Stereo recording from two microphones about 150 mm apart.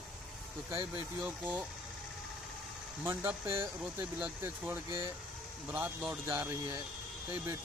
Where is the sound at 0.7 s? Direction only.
25° right (ahead or behind).